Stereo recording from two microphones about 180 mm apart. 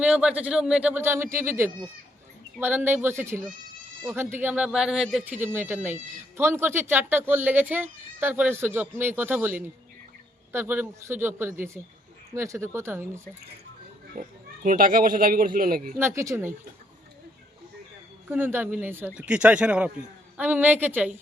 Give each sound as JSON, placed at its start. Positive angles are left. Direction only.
{"t": 0.0, "sound": "speech", "side_deg": -5}
{"t": 14.2, "sound": "speech", "side_deg": -50}
{"t": 16.0, "sound": "speech", "side_deg": -15}
{"t": 18.3, "sound": "speech", "side_deg": -10}